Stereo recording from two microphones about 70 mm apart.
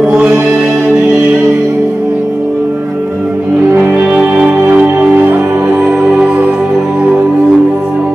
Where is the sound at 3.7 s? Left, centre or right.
Centre.